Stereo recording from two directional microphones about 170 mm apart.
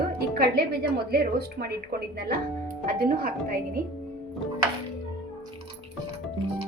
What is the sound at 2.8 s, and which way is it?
Speech, 60° right (ahead or behind).